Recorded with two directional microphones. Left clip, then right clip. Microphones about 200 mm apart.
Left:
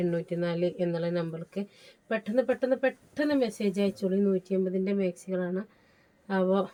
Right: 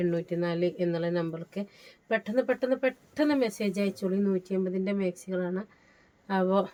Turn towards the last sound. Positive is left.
turn(degrees=-20)  # may be behind; listen again after turning